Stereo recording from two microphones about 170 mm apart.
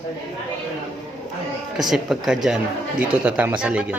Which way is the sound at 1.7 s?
Centre (ahead or behind).